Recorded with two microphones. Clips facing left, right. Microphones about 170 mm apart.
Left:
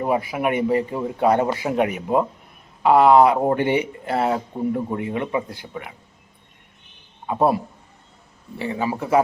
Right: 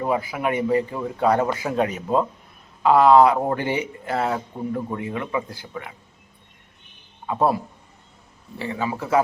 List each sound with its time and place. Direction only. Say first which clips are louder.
0.0 s speech: left 2 dB; 20° left (ahead or behind)
7.3 s speech: left 2 dB; 20° left (ahead or behind)
8.5 s speech: left 2 dB; 20° left (ahead or behind)